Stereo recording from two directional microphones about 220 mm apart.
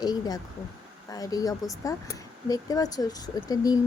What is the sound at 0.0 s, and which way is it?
Speech, 15° left (ahead or behind).